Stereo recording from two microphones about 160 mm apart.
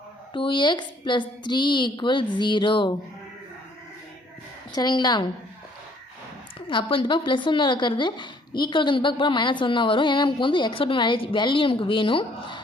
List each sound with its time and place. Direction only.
0.3 s a woman's voice: 30° left (ahead or behind)
4.7 s a woman's voice: 25° left (ahead or behind)
6.7 s speech: 30° left (ahead or behind)